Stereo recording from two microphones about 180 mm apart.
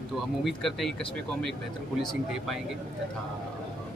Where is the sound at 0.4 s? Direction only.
Centre (ahead or behind).